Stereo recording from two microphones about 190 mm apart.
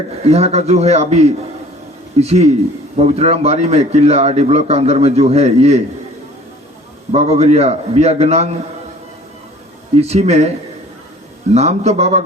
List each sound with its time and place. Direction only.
0.3 s a man's voice: 35° right (ahead or behind)
7.1 s a man's voice: 35° right (ahead or behind)
10.0 s a man's voice: 35° right (ahead or behind)
11.5 s a man's voice: 35° right (ahead or behind)